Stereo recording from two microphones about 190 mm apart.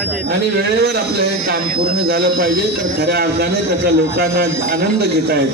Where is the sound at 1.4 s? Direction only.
55° right (ahead or behind).